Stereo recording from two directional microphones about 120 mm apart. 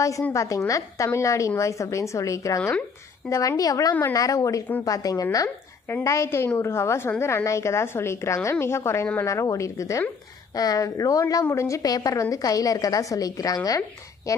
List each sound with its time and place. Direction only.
0.3 s a woman's voice: 25° left (ahead or behind)